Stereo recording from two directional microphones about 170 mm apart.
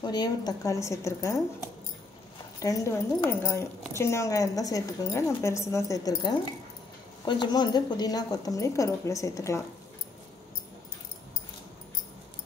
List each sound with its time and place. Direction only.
0.0 s a woman's voice: 25° left (ahead or behind)
2.6 s a woman's voice: 20° left (ahead or behind)